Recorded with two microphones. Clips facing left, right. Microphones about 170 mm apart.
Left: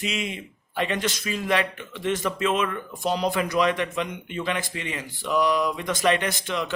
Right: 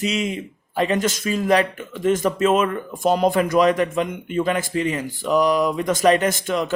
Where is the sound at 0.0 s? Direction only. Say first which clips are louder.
Right 6 dB; 40° right (ahead or behind).